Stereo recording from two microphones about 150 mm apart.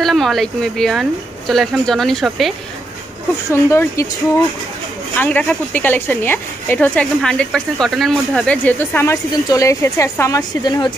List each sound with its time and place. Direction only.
0.0 s speech: centre (ahead or behind)
3.5 s speech: 20° left (ahead or behind)
5.1 s speech: 10° left (ahead or behind); by 10.9 s 30° left (ahead or behind)